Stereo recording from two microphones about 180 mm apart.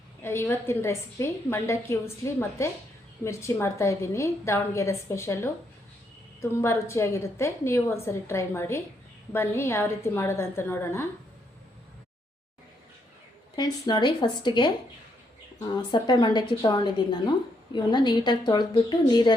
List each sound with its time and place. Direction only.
0.2 s a woman's voice: 15° left (ahead or behind)
13.6 s a woman's voice: 25° left (ahead or behind)
15.7 s a woman's voice: 25° left (ahead or behind)